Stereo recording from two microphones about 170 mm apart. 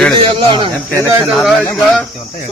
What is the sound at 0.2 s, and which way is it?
Speech, 30° right (ahead or behind).